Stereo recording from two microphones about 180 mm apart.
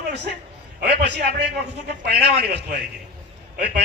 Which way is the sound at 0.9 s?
65° right (ahead or behind).